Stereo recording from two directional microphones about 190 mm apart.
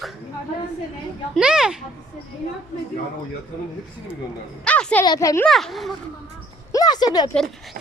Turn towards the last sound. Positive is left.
turn(degrees=20)  # may be behind; listen again after turning